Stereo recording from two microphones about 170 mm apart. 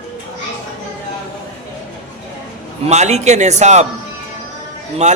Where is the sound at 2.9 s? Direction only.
40° right (ahead or behind).